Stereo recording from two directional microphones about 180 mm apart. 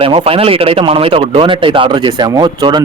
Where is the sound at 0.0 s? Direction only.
30° right (ahead or behind).